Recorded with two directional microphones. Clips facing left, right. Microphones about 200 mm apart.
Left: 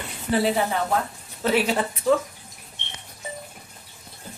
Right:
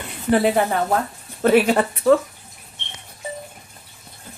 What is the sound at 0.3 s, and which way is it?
Speech, 55° right (ahead or behind).